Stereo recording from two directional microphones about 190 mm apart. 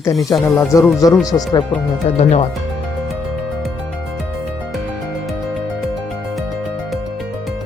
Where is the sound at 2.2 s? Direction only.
35° left (ahead or behind).